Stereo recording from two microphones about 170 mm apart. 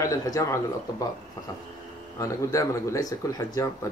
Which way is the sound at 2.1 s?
20° left (ahead or behind).